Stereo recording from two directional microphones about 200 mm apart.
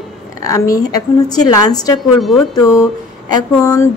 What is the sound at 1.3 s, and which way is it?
Speech, 20° left (ahead or behind).